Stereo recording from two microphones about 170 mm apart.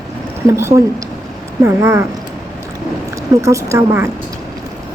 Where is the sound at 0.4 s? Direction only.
15° right (ahead or behind).